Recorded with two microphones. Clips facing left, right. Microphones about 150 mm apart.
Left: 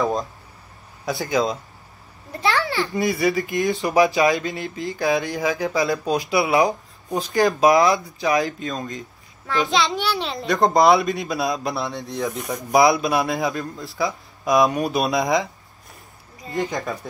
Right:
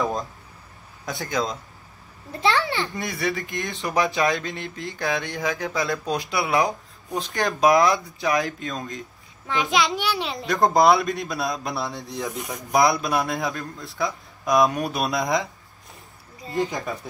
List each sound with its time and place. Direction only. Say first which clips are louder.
1.0 s speech: left 5 dB; centre (ahead or behind)
2.4 s a sound: left 1 dB; 20° right (ahead or behind)
3.0 s speech: left 7 dB; 5° left (ahead or behind)
9.7 s a child's voice: right 1 dB; 25° left (ahead or behind)
10.1 s speech: left 3 dB; centre (ahead or behind)
16.5 s speech: left 1 dB; centre (ahead or behind)